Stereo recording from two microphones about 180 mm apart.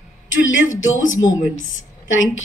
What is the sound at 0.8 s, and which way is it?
A woman's voice, 90° left.